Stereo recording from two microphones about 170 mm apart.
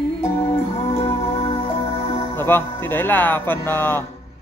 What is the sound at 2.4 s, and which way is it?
Speech, 10° left (ahead or behind).